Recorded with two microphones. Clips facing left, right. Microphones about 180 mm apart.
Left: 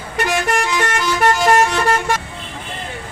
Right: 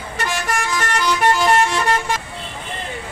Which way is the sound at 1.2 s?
45° left (ahead or behind).